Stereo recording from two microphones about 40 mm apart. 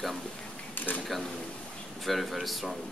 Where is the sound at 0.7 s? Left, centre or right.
Left.